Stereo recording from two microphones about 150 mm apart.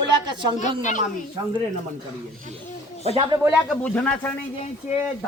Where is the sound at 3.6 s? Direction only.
10° left (ahead or behind).